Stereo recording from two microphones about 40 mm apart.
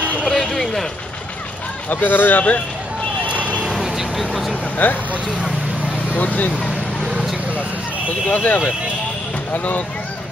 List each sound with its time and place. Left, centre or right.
0.3 s speech: centre
1.9 s speech: left
3.3 s vehicle: right
3.7 s vehicle: centre
4.8 s speech: left
6.1 s speech: left
7.1 s a sound: centre
8.3 s speech: left